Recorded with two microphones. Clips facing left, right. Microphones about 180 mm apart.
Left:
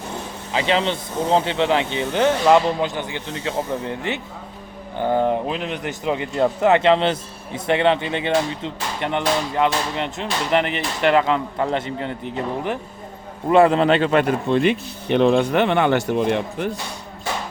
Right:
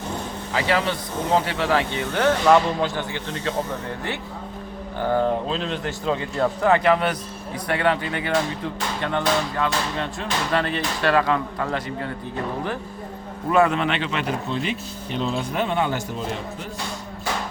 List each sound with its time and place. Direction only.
0.5 s a man's voice: 20° left (ahead or behind)
13.5 s a man's voice: 30° left (ahead or behind); by 16.7 s 65° left (ahead or behind)